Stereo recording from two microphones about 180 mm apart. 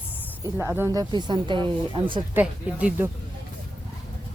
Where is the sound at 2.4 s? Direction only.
10° right (ahead or behind).